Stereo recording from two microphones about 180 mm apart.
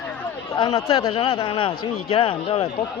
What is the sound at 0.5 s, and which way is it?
A man's voice, 20° left (ahead or behind).